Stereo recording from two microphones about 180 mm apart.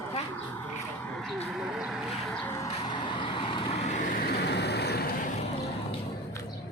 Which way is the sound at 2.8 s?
25° left (ahead or behind).